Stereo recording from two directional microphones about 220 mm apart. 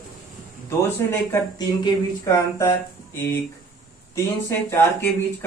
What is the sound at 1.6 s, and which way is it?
Speech, 15° left (ahead or behind).